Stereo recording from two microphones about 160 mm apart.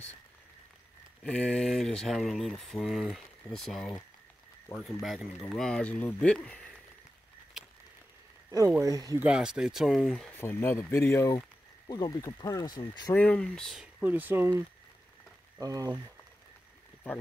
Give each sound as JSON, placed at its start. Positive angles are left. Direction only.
{"t": 1.2, "sound": "speech", "side_deg": 5}
{"t": 8.5, "sound": "speech", "side_deg": -20}
{"t": 9.2, "sound": "speech", "side_deg": -5}
{"t": 10.3, "sound": "speech", "side_deg": 15}
{"t": 13.1, "sound": "speech", "side_deg": 10}
{"t": 14.0, "sound": "speech", "side_deg": -10}
{"t": 15.6, "sound": "speech", "side_deg": -20}